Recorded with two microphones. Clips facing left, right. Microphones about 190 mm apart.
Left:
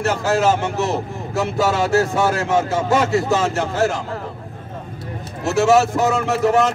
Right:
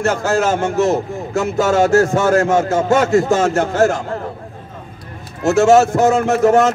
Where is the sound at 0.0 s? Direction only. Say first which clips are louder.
Right 1 dB; 45° right (ahead or behind).